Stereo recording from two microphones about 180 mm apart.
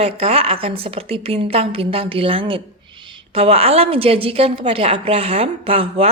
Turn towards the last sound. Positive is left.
turn(degrees=-30)  # may be behind; listen again after turning